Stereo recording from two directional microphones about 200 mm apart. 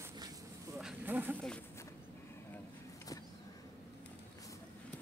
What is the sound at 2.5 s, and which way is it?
Vehicle, 15° left (ahead or behind).